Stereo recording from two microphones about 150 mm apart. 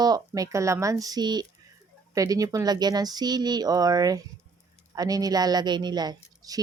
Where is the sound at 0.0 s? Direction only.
25° right (ahead or behind).